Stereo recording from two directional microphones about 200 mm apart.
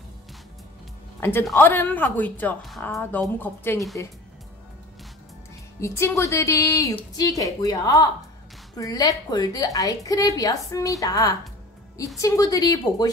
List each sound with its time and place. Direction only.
1.5 s a woman's voice: 10° left (ahead or behind)
5.8 s a woman's voice: 15° left (ahead or behind)